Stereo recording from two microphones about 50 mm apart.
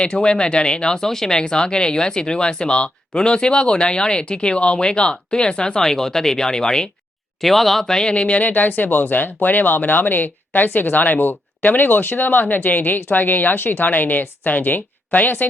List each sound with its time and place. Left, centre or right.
0.0 s speech: centre
7.4 s speech: centre; by 15.4 s left